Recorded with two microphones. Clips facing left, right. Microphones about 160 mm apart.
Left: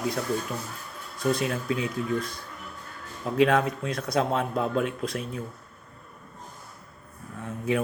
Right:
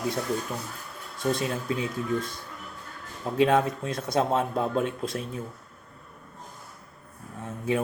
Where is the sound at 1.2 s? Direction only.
25° right (ahead or behind).